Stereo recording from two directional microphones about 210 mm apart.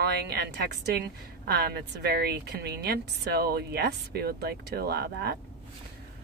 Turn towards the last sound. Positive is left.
turn(degrees=-50)  # may be behind; listen again after turning